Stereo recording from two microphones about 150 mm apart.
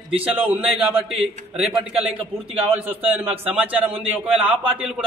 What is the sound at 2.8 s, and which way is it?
A man's voice, 10° right (ahead or behind).